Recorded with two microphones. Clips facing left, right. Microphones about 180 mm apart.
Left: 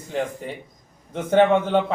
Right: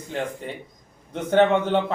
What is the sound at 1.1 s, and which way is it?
Speech, 5° left (ahead or behind).